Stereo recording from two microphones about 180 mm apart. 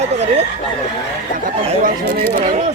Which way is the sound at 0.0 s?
35° right (ahead or behind).